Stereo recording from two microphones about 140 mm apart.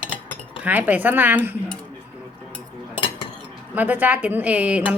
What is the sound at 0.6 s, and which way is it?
Speech, 10° right (ahead or behind).